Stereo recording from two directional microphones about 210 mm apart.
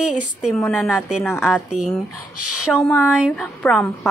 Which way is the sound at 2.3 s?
90° left.